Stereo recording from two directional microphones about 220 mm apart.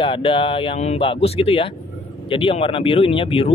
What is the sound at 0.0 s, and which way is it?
Speech, 25° left (ahead or behind).